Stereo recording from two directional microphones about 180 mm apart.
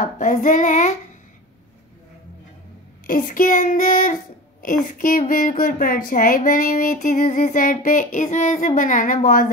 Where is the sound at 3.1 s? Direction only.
50° left (ahead or behind).